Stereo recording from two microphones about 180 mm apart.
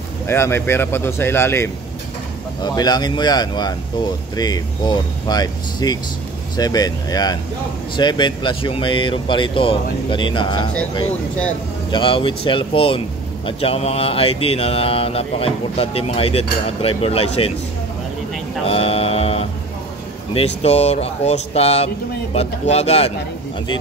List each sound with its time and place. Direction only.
0.3 s speech: 15° left (ahead or behind)
11.9 s speech: 30° left (ahead or behind)
13.5 s mantra: 30° left (ahead or behind)
18.7 s a sound: 30° left (ahead or behind)
20.3 s mantra: 35° left (ahead or behind)